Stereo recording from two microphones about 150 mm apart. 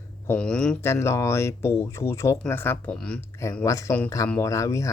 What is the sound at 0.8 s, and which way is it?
Speech, 15° left (ahead or behind).